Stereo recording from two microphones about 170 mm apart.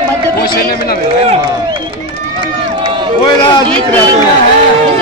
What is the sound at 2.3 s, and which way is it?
Run, 30° right (ahead or behind).